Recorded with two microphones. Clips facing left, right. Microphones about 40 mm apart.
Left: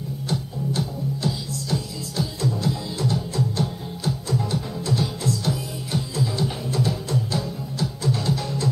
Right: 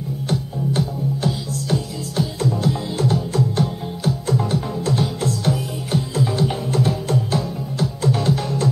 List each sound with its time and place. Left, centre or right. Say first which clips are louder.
0.3 s music: right 4 dB; right
8.0 s music: right 5 dB; right